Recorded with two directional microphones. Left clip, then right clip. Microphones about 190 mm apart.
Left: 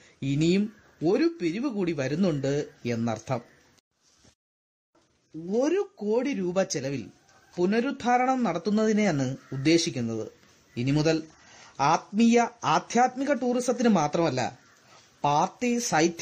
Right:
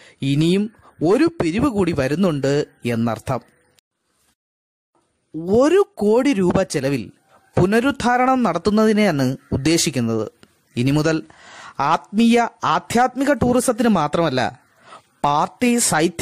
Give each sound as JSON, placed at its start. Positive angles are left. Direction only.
{"t": 0.2, "sound": "speech", "side_deg": -35}
{"t": 5.5, "sound": "speech", "side_deg": -45}